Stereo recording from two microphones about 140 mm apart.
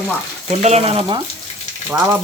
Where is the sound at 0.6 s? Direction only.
50° right (ahead or behind).